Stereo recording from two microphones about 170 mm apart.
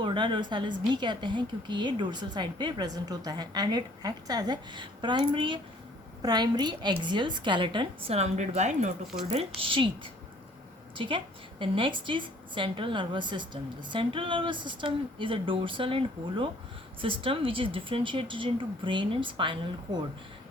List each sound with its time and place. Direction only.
0.0 s a woman's voice: 30° right (ahead or behind)
9.6 s a woman's voice: 30° right (ahead or behind)